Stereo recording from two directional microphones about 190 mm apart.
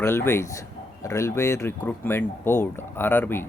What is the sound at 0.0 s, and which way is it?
Speech, 10° left (ahead or behind).